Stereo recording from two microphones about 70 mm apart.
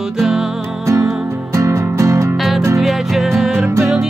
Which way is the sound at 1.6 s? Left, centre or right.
Right.